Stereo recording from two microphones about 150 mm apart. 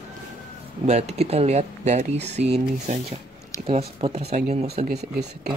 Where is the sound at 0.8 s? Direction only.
45° right (ahead or behind).